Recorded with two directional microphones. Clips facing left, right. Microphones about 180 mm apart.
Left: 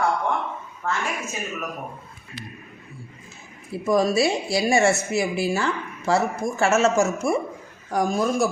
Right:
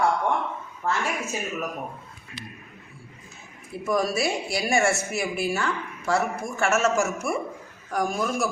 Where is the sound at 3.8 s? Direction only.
25° left (ahead or behind).